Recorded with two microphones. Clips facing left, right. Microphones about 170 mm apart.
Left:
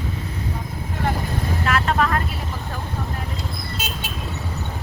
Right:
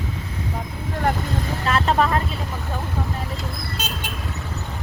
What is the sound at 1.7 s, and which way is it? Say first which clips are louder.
Vehicle: right 2 dB; 30° right (ahead or behind).